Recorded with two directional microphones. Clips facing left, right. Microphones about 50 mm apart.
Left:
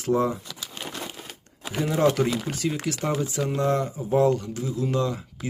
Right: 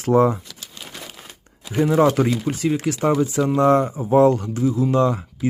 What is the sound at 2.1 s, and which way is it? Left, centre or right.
Speech, right.